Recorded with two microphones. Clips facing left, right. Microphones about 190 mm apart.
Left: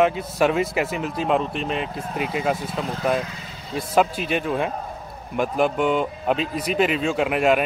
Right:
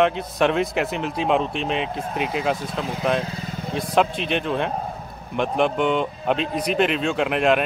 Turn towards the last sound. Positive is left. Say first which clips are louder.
# even
turn(degrees=5)  # may be behind; listen again after turning